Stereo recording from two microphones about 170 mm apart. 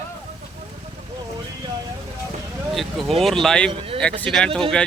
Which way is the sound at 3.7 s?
30° right (ahead or behind).